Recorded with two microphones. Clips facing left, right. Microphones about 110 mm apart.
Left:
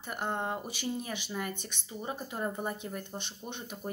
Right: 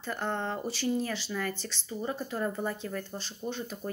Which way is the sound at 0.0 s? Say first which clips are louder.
Right 2 dB; 15° left (ahead or behind).